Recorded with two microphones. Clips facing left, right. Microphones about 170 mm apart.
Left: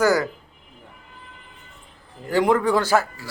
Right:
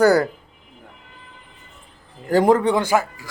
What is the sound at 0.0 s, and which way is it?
Speech, 35° right (ahead or behind).